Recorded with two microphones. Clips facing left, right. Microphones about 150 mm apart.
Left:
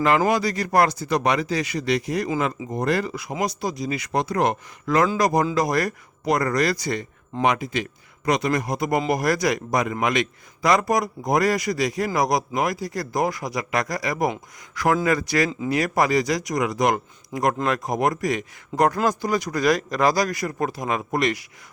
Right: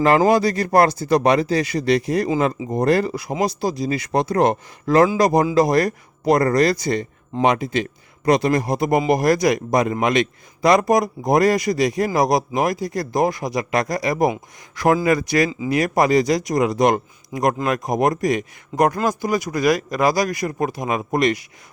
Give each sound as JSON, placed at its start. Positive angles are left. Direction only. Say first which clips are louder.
{"t": 0.3, "sound": "a man's voice", "louder": "right 5 dB", "side_deg": -30}
{"t": 18.7, "sound": "speech", "louder": "right 2 dB", "side_deg": 0}
{"t": 19.0, "sound": "a man's voice", "louder": "right 2 dB", "side_deg": -10}